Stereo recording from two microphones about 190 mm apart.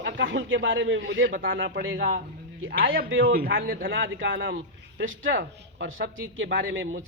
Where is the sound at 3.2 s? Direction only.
55° right (ahead or behind).